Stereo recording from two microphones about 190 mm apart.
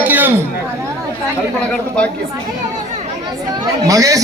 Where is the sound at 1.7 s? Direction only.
5° left (ahead or behind).